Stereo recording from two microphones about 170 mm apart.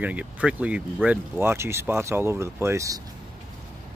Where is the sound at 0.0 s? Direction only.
10° right (ahead or behind).